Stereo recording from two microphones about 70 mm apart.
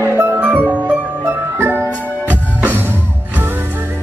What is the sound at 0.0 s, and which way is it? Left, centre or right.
Music, right.